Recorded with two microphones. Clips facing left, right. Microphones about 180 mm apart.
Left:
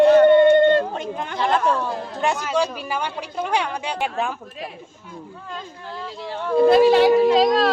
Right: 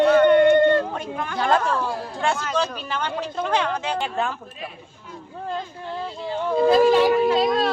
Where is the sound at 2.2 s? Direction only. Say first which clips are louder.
Left 2 dB; 15° left (ahead or behind).